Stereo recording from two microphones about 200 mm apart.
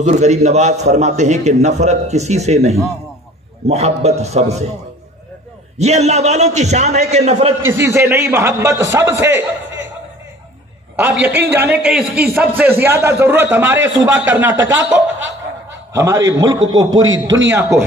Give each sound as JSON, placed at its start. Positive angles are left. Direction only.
{"t": 0.0, "sound": "a man's voice", "side_deg": -35}
{"t": 5.8, "sound": "a man's voice", "side_deg": -35}
{"t": 7.7, "sound": "a man's voice", "side_deg": -10}
{"t": 11.0, "sound": "a man's voice", "side_deg": -10}
{"t": 13.7, "sound": "a man's voice", "side_deg": -65}
{"t": 13.9, "sound": "a man's voice", "side_deg": -5}
{"t": 14.6, "sound": "a man's voice", "side_deg": -70}
{"t": 15.9, "sound": "a man's voice", "side_deg": -15}
{"t": 16.4, "sound": "a man's voice", "side_deg": -70}
{"t": 17.5, "sound": "a man's voice", "side_deg": -10}